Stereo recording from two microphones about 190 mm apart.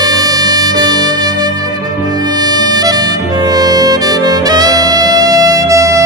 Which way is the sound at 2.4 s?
20° right (ahead or behind).